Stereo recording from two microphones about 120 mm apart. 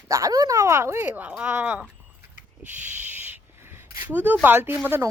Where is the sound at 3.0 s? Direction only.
15° right (ahead or behind).